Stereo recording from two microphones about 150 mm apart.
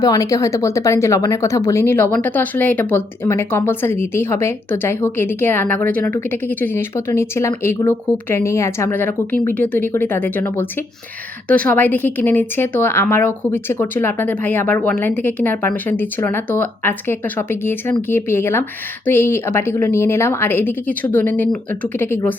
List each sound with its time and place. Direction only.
0.0 s a woman's voice: 25° left (ahead or behind)